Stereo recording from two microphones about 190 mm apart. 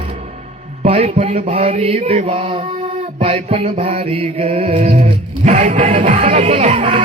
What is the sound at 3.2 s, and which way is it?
Music, 30° right (ahead or behind).